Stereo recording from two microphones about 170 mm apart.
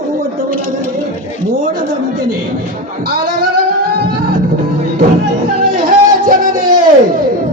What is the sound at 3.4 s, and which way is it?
Music, 60° right (ahead or behind).